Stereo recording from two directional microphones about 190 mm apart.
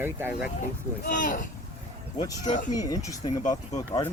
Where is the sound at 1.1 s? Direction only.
45° left (ahead or behind).